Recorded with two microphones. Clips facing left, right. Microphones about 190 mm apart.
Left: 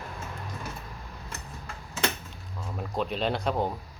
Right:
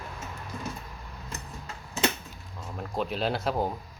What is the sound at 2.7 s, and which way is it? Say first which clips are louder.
Speech: even; centre (ahead or behind).